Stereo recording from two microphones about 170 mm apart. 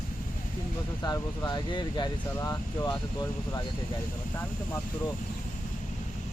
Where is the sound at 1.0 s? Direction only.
20° left (ahead or behind).